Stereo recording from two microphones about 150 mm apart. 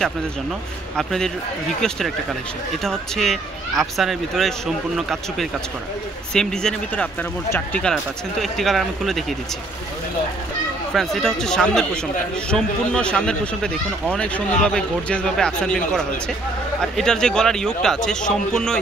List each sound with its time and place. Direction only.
0.9 s speech: 5° left (ahead or behind)
7.4 s speech: 15° left (ahead or behind)
7.8 s speech: centre (ahead or behind)
10.9 s speech: 5° left (ahead or behind)